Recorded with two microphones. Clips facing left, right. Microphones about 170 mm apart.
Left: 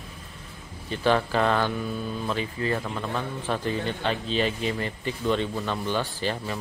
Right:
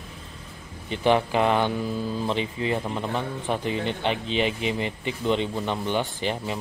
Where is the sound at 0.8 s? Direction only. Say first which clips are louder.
Right 2 dB; 20° right (ahead or behind).